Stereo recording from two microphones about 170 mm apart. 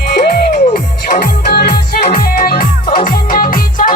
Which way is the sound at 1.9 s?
55° left (ahead or behind).